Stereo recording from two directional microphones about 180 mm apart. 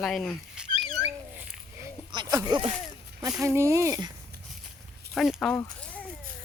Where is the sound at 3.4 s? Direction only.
15° right (ahead or behind).